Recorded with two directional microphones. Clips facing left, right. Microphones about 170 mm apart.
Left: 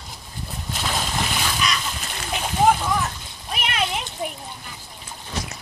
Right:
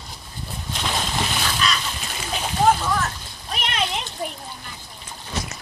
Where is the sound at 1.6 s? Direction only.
15° left (ahead or behind).